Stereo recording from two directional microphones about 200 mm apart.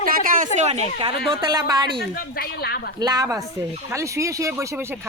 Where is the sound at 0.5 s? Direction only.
35° right (ahead or behind).